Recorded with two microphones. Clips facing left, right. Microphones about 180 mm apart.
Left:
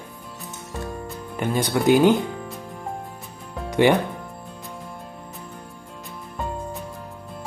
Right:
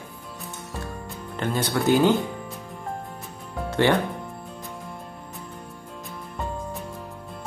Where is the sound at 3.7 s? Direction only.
15° left (ahead or behind).